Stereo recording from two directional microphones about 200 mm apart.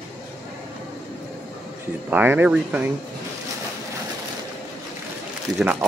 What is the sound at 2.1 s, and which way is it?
Speech, 10° right (ahead or behind).